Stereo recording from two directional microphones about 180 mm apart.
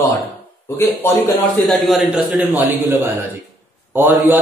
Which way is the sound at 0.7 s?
15° left (ahead or behind).